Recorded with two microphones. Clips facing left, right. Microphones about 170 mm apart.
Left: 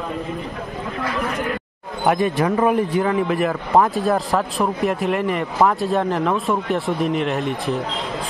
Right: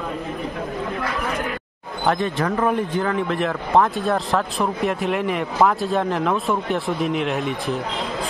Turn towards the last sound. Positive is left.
turn(degrees=0)  # may be behind; listen again after turning